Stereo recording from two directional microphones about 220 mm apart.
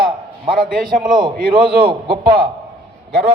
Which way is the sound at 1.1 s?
20° right (ahead or behind).